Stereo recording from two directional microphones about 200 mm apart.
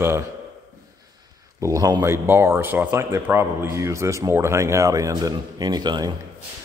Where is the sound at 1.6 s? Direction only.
15° right (ahead or behind).